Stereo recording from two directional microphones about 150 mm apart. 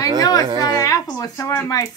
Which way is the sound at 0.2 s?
25° left (ahead or behind).